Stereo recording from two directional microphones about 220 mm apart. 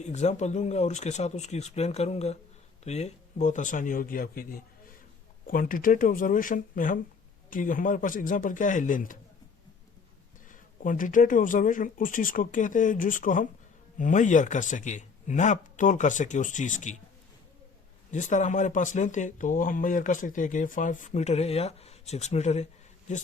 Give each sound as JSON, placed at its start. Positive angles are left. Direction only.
{"t": 0.0, "sound": "speech", "side_deg": 30}
{"t": 10.5, "sound": "speech", "side_deg": 35}
{"t": 18.1, "sound": "speech", "side_deg": 35}